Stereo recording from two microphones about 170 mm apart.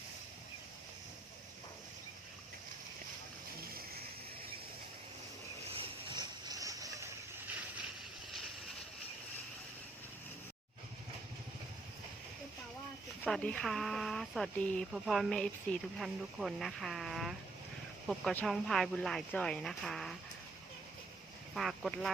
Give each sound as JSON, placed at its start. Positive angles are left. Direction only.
{"t": 5.7, "sound": "boat", "side_deg": -25}
{"t": 13.2, "sound": "speech", "side_deg": 5}
{"t": 21.5, "sound": "speech", "side_deg": 0}